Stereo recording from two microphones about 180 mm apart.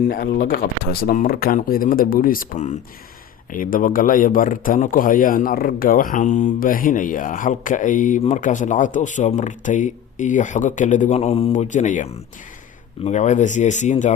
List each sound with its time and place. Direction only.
0.1 s a man's voice: 55° left (ahead or behind)
13.1 s speech: 40° left (ahead or behind)